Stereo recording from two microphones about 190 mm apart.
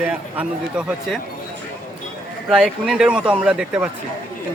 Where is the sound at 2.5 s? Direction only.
5° right (ahead or behind).